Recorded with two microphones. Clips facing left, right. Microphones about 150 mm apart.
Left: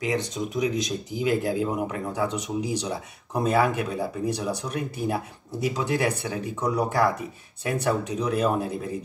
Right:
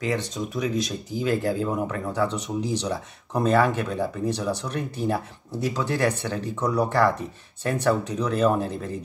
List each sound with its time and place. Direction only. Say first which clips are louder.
0.0 s speech: even; 15° left (ahead or behind)